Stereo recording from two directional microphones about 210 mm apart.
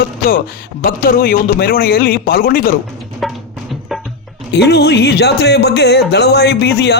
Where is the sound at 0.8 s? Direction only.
40° left (ahead or behind).